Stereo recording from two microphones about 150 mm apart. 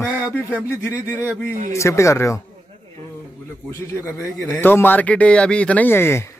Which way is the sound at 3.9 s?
20° left (ahead or behind).